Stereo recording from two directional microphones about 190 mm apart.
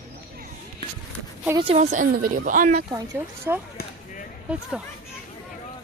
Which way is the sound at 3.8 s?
55° left (ahead or behind).